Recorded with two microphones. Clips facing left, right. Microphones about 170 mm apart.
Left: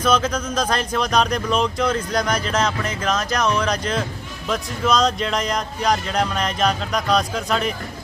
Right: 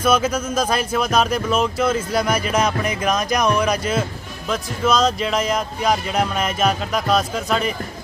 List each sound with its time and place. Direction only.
0.0 s speech: 10° right (ahead or behind)